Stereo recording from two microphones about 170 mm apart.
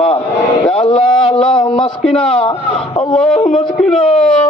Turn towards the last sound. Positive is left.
turn(degrees=5)  # may be behind; listen again after turning